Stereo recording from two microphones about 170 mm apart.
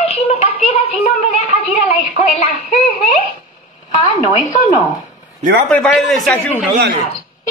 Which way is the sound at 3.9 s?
25° left (ahead or behind).